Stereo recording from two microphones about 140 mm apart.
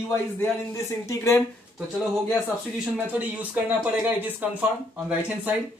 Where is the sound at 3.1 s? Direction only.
10° right (ahead or behind).